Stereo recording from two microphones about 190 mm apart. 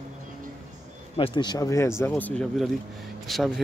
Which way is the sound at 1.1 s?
25° left (ahead or behind).